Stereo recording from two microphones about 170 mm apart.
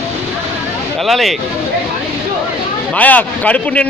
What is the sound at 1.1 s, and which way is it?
Speech, centre (ahead or behind).